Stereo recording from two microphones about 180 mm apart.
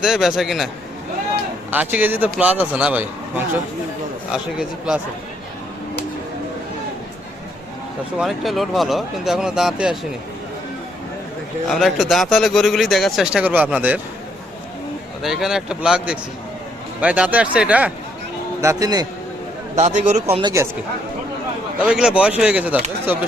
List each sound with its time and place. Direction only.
0.0 s speech: centre (ahead or behind)
1.7 s speech: 10° right (ahead or behind)
8.2 s speech: centre (ahead or behind)
11.7 s speech: centre (ahead or behind)
15.2 s speech: centre (ahead or behind)
18.6 s a man's voice: 20° right (ahead or behind)
19.8 s a man's voice: 40° right (ahead or behind)
20.6 s speech: 15° right (ahead or behind)
21.8 s speech: 5° right (ahead or behind)